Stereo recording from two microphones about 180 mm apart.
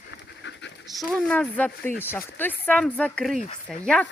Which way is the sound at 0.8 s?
5° left (ahead or behind).